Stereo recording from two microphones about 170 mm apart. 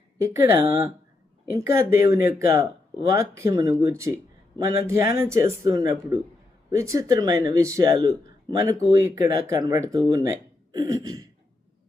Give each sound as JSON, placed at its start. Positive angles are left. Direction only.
{"t": 0.2, "sound": "speech", "side_deg": -20}
{"t": 1.5, "sound": "speech", "side_deg": -15}